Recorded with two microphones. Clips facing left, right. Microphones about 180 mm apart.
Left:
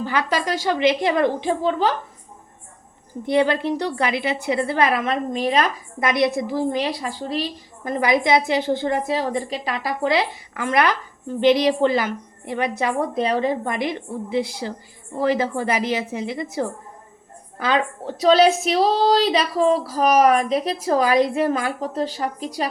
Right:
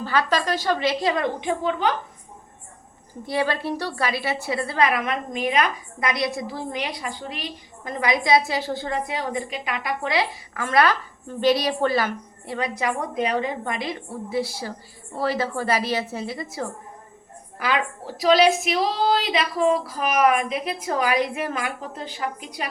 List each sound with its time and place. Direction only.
0.0 s a woman's voice: 15° left (ahead or behind); by 1.9 s 30° left (ahead or behind)
3.2 s a woman's voice: 20° left (ahead or behind)
13.9 s a woman's voice: 20° left (ahead or behind)